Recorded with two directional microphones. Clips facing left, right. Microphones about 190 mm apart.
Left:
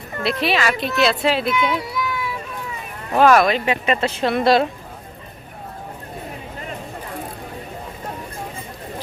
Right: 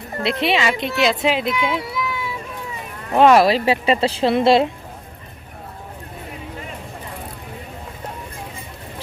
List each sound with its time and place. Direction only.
0.2 s speech: 25° right (ahead or behind)
1.5 s run: 25° right (ahead or behind)
3.2 s speech: 25° right (ahead or behind)